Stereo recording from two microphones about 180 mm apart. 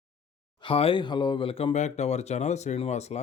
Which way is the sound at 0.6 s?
30° left (ahead or behind).